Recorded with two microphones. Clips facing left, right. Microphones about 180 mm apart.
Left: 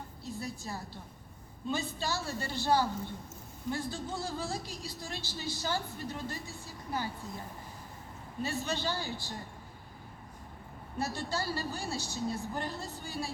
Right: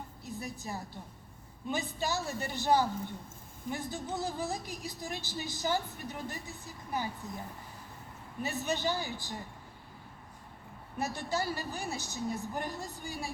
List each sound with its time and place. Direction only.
0.3 s a woman's voice: 20° right (ahead or behind)
8.4 s a woman's voice: 20° right (ahead or behind)
10.9 s a woman's voice: 20° right (ahead or behind)